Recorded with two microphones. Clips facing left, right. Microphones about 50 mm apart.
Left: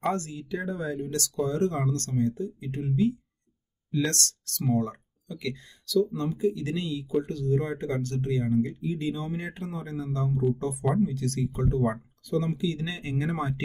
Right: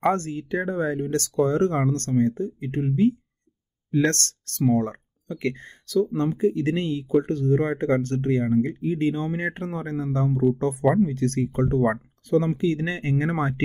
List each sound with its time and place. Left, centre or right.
0.1 s speech: right